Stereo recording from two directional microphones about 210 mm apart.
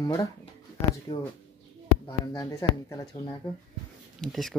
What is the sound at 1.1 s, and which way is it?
Speech, 25° left (ahead or behind).